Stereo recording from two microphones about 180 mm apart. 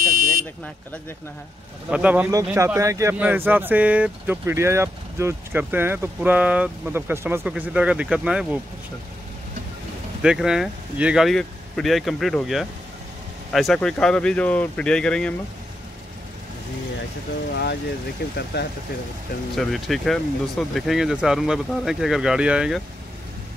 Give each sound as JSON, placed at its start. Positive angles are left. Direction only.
{"t": 0.0, "sound": "a sound", "side_deg": -50}
{"t": 1.9, "sound": "speech", "side_deg": -5}
{"t": 10.2, "sound": "speech", "side_deg": -5}
{"t": 18.5, "sound": "speech", "side_deg": 65}
{"t": 19.5, "sound": "speech", "side_deg": 0}